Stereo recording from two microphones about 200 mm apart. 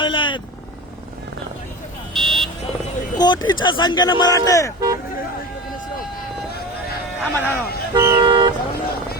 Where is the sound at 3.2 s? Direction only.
20° left (ahead or behind).